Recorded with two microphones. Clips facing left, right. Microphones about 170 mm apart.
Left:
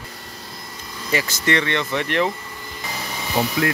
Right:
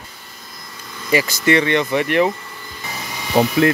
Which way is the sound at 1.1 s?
10° right (ahead or behind).